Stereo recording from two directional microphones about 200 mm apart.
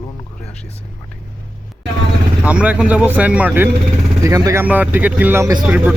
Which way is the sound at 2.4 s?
5° right (ahead or behind).